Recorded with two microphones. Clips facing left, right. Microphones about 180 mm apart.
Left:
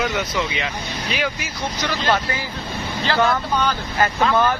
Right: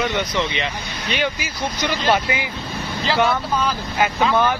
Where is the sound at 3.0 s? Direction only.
5° right (ahead or behind).